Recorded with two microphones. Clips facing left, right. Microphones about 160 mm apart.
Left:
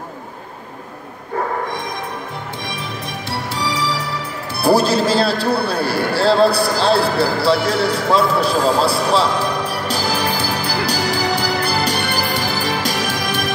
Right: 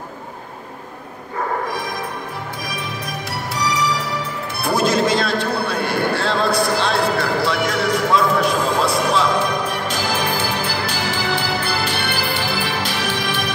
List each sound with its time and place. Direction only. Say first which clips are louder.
3.3 s music: left 1 dB; 25° left (ahead or behind); by 13.5 s 40° left (ahead or behind)